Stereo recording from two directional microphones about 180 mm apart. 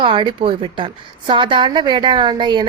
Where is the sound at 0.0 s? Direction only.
25° right (ahead or behind).